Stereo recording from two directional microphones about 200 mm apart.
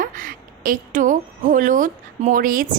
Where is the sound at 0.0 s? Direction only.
45° right (ahead or behind).